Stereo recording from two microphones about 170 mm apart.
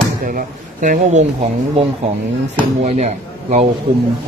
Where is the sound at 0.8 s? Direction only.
50° right (ahead or behind).